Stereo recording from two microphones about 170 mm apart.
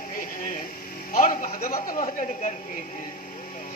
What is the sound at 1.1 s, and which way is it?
A man's voice, 50° left (ahead or behind).